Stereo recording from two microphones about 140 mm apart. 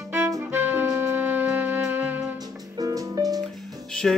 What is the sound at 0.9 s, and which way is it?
Music, 15° right (ahead or behind).